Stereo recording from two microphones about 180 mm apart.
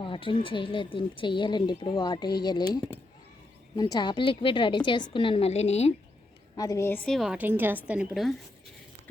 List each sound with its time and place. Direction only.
0.0 s a woman's voice: 30° left (ahead or behind)
6.6 s a woman's voice: 15° left (ahead or behind); by 8.4 s centre (ahead or behind)